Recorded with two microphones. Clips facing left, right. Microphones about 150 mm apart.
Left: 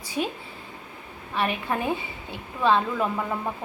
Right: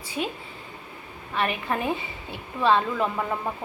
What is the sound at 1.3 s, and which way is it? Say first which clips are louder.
A woman's voice: even; 5° left (ahead or behind).